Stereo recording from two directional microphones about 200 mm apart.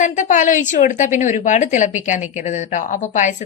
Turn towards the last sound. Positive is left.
turn(degrees=40)  # may be behind; listen again after turning